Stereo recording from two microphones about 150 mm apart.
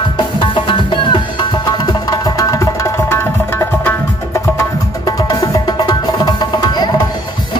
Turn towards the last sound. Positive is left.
turn(degrees=25)  # may be behind; listen again after turning